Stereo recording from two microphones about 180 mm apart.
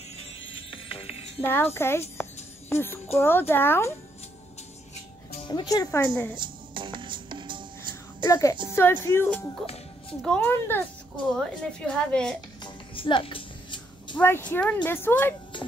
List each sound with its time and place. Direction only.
0.7 s music: 30° left (ahead or behind)
1.4 s speech: 10° left (ahead or behind)
5.4 s speech: 25° left (ahead or behind)
6.3 s music: 25° right (ahead or behind)
8.3 s a woman's voice: 20° left (ahead or behind)
12.6 s music: 30° left (ahead or behind)
14.1 s speech: 10° left (ahead or behind)